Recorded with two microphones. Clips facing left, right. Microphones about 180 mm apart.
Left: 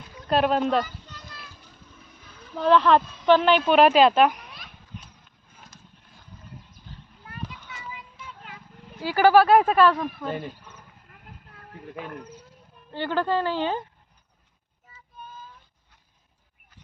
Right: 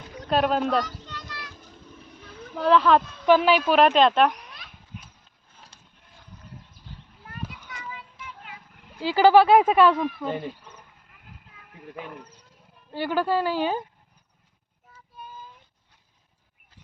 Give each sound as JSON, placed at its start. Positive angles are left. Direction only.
{"t": 0.3, "sound": "speech", "side_deg": 0}
{"t": 0.9, "sound": "children playing", "side_deg": -75}
{"t": 2.6, "sound": "speech", "side_deg": 0}
{"t": 4.9, "sound": "clip-clop", "side_deg": -5}
{"t": 5.7, "sound": "horse", "side_deg": -30}
{"t": 9.0, "sound": "speech", "side_deg": -15}
{"t": 9.9, "sound": "speech", "side_deg": -5}
{"t": 12.9, "sound": "speech", "side_deg": -10}